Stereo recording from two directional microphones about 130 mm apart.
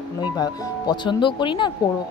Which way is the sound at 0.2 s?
30° left (ahead or behind).